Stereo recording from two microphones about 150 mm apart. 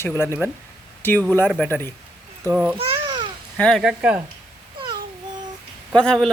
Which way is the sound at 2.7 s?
35° right (ahead or behind).